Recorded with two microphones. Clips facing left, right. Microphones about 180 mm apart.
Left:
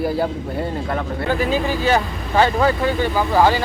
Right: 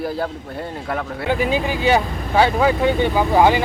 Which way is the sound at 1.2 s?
15° right (ahead or behind).